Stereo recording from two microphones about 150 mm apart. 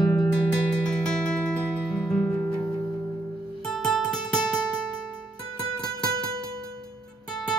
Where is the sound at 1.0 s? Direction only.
5° left (ahead or behind).